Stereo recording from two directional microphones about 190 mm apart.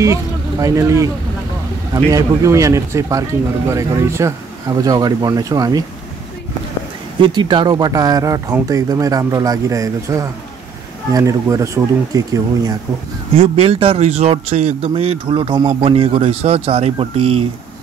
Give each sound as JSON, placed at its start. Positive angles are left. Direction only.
{"t": 0.0, "sound": "speech", "side_deg": -15}
{"t": 7.2, "sound": "speech", "side_deg": -25}
{"t": 13.4, "sound": "speech", "side_deg": -30}